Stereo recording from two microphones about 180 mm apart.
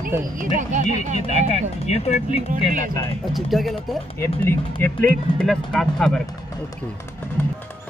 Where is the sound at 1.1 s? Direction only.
40° left (ahead or behind).